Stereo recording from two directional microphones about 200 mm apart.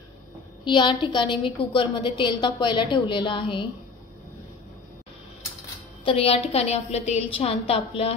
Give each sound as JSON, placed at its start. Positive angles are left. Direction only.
{"t": 0.7, "sound": "a woman's voice", "side_deg": 25}
{"t": 6.0, "sound": "a woman's voice", "side_deg": 30}